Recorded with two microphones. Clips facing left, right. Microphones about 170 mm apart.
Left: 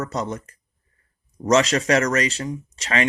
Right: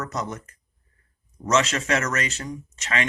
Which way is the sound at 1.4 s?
35° left (ahead or behind).